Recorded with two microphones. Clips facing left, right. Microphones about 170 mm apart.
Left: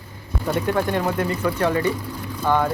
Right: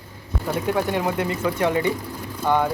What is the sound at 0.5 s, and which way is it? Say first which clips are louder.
Speech: left 1 dB; 10° right (ahead or behind).